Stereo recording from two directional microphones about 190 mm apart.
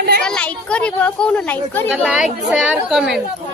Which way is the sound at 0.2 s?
5° left (ahead or behind).